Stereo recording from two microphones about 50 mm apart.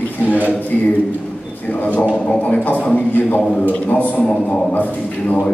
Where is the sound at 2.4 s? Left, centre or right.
Left.